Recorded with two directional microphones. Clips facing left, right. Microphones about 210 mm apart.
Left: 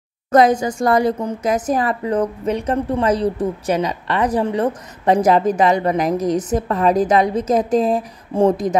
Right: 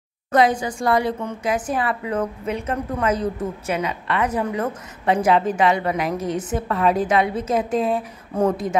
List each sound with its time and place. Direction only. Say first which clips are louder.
0.3 s speech: left 4 dB; 45° left (ahead or behind)